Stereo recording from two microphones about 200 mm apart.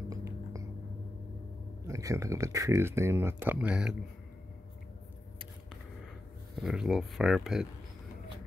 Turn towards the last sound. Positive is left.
turn(degrees=0)  # may be behind; listen again after turning